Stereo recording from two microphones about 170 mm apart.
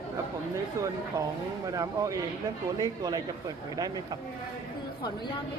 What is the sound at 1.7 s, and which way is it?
Speech, 20° right (ahead or behind).